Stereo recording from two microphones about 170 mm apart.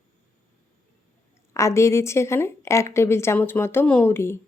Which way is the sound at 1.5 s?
15° left (ahead or behind).